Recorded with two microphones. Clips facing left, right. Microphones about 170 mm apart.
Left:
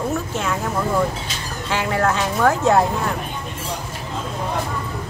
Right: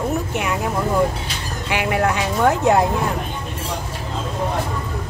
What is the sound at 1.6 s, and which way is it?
Speech, 15° right (ahead or behind).